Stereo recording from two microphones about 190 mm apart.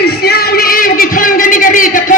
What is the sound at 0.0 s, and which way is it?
Music, 55° left (ahead or behind).